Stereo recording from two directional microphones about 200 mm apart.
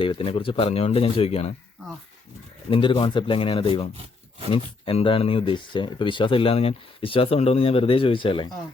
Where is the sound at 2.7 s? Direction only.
25° left (ahead or behind).